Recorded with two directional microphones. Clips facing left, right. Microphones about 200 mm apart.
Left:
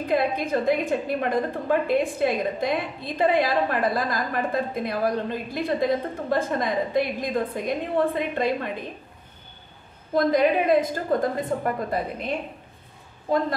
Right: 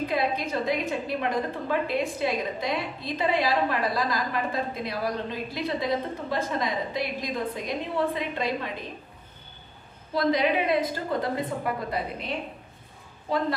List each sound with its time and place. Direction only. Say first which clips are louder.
0.1 s a woman's voice: left 4 dB; 50° left (ahead or behind)
10.1 s a woman's voice: left 4 dB; 50° left (ahead or behind)